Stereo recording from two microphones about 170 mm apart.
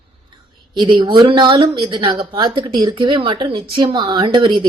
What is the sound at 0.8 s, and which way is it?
Speech, 25° right (ahead or behind).